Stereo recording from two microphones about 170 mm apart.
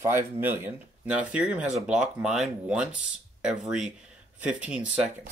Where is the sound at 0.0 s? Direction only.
15° right (ahead or behind).